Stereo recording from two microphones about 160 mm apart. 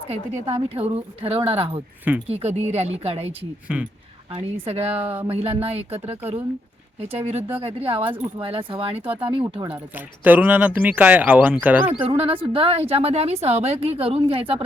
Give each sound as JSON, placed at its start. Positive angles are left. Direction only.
{"t": 0.7, "sound": "a woman's voice", "side_deg": -35}
{"t": 3.7, "sound": "speech", "side_deg": -10}
{"t": 4.4, "sound": "a woman's voice", "side_deg": -40}
{"t": 9.6, "sound": "speech", "side_deg": -10}
{"t": 11.9, "sound": "a woman's voice", "side_deg": -40}